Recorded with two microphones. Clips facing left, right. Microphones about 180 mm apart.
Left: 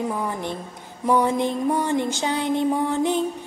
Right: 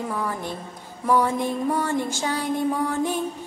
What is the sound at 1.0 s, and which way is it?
Music, 20° left (ahead or behind).